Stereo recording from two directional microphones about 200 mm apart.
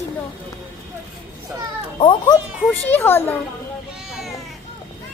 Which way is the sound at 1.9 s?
25° left (ahead or behind).